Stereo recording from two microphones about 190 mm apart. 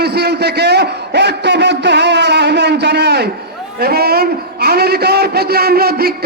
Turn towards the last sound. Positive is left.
turn(degrees=-55)  # may be behind; listen again after turning